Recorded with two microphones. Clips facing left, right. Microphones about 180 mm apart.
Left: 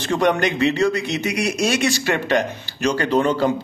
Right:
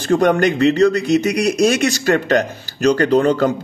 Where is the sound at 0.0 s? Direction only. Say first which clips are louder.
Right 5 dB; 45° right (ahead or behind).